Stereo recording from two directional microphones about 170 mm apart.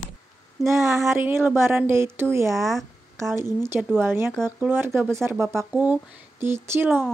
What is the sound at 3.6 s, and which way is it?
Speech, 15° right (ahead or behind).